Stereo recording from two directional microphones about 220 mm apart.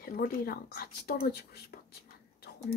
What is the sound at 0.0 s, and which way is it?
Speech, 40° left (ahead or behind).